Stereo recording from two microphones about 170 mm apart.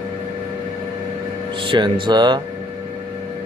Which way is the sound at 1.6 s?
30° right (ahead or behind).